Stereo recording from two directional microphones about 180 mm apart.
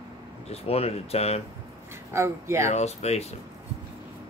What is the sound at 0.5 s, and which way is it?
Speech, 35° left (ahead or behind).